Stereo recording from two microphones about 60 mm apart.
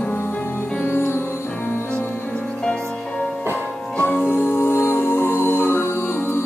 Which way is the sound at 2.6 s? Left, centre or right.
Centre.